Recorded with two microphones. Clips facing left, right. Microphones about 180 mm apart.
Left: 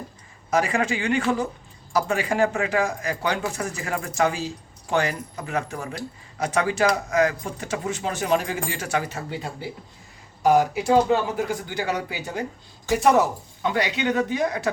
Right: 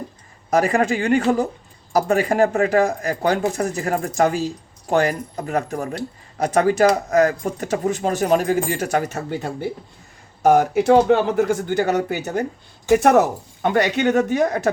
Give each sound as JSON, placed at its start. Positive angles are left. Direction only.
{"t": 0.5, "sound": "speech", "side_deg": -40}